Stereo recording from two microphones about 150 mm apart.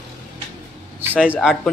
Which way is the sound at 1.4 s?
Centre (ahead or behind).